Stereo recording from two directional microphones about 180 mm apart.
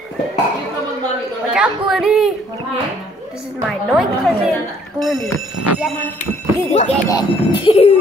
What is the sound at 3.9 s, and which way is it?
Speech, centre (ahead or behind).